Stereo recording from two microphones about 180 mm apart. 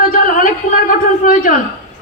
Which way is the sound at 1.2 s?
50° left (ahead or behind).